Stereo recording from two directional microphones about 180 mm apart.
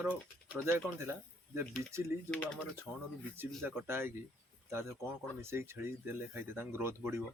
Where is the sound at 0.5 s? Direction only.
10° right (ahead or behind).